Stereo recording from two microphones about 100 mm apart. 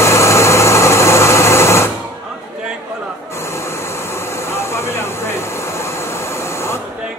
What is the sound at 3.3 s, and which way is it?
Vehicle, 25° left (ahead or behind).